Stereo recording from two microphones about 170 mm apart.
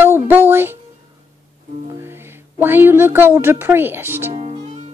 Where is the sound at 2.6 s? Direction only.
10° right (ahead or behind).